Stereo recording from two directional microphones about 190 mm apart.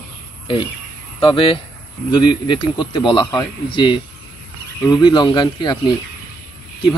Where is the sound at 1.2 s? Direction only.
25° left (ahead or behind).